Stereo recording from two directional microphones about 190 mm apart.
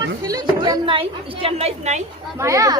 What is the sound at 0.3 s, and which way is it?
A woman's voice, 20° right (ahead or behind).